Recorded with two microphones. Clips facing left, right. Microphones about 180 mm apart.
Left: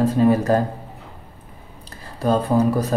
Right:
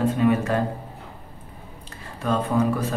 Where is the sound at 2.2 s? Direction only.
35° left (ahead or behind).